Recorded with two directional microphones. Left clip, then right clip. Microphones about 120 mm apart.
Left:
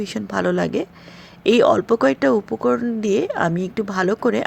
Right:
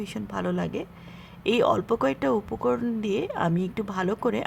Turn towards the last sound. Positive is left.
turn(degrees=25)  # may be behind; listen again after turning